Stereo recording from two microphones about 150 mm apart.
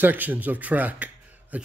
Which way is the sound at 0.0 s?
10° right (ahead or behind).